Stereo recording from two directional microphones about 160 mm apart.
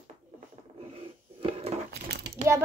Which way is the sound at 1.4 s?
40° right (ahead or behind).